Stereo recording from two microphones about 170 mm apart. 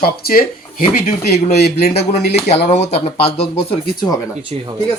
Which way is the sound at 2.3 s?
40° left (ahead or behind).